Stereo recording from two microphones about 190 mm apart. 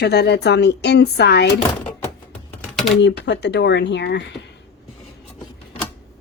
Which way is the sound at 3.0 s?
65° left (ahead or behind).